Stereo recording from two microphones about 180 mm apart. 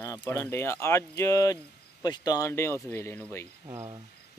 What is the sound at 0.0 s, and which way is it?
Speech, 15° left (ahead or behind).